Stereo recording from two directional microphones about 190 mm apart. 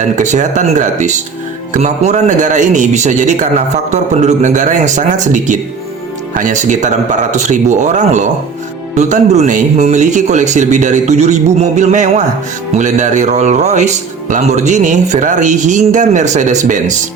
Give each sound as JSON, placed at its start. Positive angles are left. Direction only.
{"t": 0.2, "sound": "speech", "side_deg": -40}